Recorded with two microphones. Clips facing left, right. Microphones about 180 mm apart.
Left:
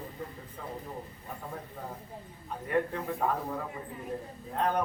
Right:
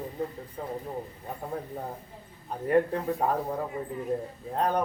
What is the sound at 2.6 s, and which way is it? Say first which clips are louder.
Speech: right 6 dB; 35° right (ahead or behind).